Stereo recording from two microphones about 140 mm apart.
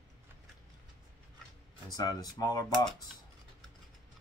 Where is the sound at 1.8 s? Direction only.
30° left (ahead or behind).